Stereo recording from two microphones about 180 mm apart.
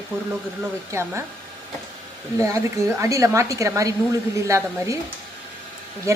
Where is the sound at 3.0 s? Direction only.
15° right (ahead or behind).